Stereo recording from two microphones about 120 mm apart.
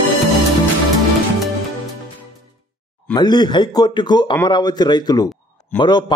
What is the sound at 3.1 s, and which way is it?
A man's voice, 35° left (ahead or behind).